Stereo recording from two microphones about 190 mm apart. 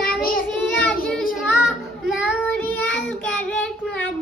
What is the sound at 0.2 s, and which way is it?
Child singing, 50° left (ahead or behind).